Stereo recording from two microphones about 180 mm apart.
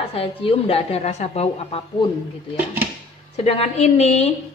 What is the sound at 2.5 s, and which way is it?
Speech, 10° right (ahead or behind).